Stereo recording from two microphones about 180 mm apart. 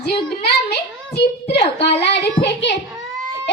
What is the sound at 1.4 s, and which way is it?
Speech, 35° left (ahead or behind).